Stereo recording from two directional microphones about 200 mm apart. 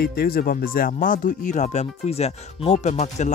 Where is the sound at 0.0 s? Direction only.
45° left (ahead or behind).